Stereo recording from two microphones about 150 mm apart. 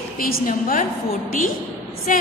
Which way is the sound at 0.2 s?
70° left (ahead or behind).